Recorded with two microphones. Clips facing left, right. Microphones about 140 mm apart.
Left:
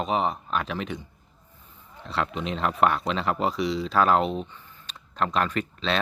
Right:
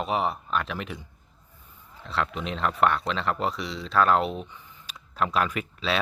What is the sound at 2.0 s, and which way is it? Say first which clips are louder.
Speech: left 1 dB; centre (ahead or behind).